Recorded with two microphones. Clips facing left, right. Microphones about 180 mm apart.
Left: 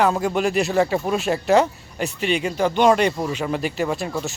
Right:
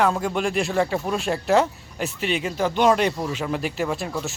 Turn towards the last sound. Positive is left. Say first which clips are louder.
# left 2 dB
turn(degrees=0)  # may be behind; listen again after turning